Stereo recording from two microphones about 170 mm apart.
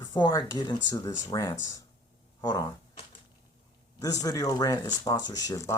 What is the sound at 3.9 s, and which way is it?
Speech, 20° left (ahead or behind).